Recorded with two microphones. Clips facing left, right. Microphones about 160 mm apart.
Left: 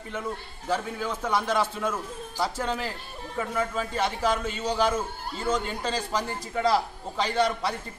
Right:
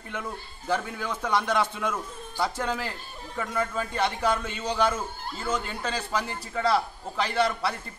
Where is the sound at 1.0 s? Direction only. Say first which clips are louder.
Even; 10° left (ahead or behind).